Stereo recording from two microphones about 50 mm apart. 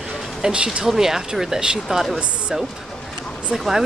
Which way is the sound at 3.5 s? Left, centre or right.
Centre.